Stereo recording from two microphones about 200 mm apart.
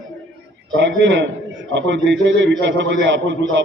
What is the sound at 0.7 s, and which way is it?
A man's voice, 65° right (ahead or behind).